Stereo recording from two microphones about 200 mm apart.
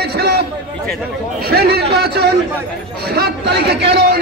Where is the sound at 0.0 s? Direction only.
55° right (ahead or behind).